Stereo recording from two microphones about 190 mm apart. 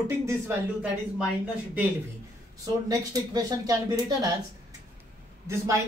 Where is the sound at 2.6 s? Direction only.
20° right (ahead or behind).